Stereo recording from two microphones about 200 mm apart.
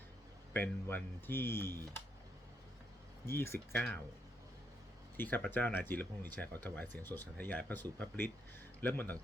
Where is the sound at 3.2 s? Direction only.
10° left (ahead or behind).